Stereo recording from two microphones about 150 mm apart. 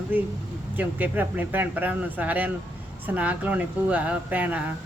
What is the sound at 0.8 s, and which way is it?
Speech, 10° right (ahead or behind).